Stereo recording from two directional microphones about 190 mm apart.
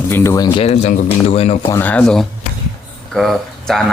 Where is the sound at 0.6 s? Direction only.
35° left (ahead or behind).